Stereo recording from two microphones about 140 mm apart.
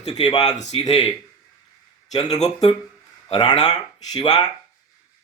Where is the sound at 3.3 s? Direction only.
35° left (ahead or behind).